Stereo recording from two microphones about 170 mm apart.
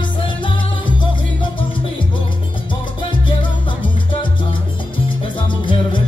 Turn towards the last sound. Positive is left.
turn(degrees=30)  # may be behind; listen again after turning